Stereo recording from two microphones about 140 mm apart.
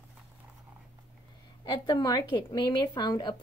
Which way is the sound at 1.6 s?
30° left (ahead or behind).